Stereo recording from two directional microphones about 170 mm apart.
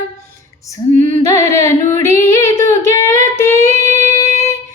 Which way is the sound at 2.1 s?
15° left (ahead or behind).